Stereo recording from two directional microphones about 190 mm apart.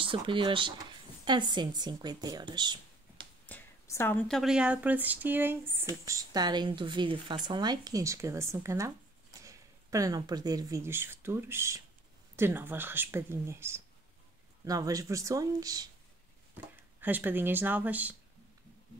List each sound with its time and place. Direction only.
0.0 s a woman's voice: 25° right (ahead or behind)
3.4 s a woman's voice: 10° left (ahead or behind); by 5.9 s 10° right (ahead or behind)
6.0 s speech: 20° right (ahead or behind)